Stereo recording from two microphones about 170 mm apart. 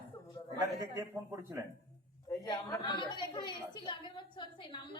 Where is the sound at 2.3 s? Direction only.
20° left (ahead or behind).